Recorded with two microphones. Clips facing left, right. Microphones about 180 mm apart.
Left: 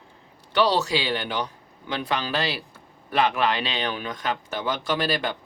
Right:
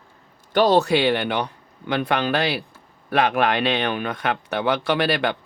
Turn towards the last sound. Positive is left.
turn(degrees=-65)  # may be behind; listen again after turning